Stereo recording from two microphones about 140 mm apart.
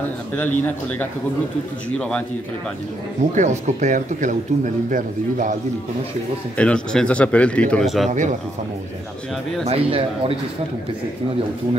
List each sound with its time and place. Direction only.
0.4 s speech: 10° left (ahead or behind)
3.3 s speech: 60° right (ahead or behind)
6.5 s speech: 5° left (ahead or behind)
8.1 s speech: 60° right (ahead or behind)
9.7 s speech: 40° right (ahead or behind)